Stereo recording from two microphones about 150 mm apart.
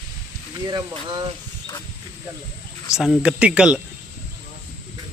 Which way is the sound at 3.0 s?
5° right (ahead or behind).